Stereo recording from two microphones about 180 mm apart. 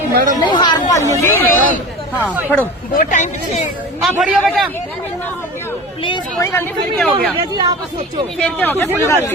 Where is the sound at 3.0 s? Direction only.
45° left (ahead or behind).